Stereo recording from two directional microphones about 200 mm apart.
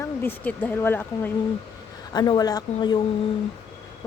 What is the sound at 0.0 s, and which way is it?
A woman's voice, 10° left (ahead or behind).